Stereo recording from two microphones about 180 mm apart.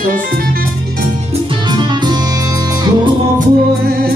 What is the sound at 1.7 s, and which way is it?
Music, 25° right (ahead or behind).